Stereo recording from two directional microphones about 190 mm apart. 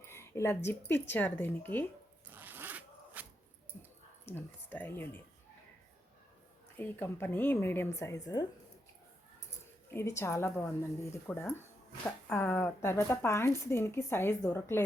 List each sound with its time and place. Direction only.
0.0 s speech: 15° left (ahead or behind)
2.2 s zipper: 10° right (ahead or behind)
4.3 s speech: 10° left (ahead or behind)
6.7 s speech: 10° left (ahead or behind)
9.9 s speech: 15° left (ahead or behind)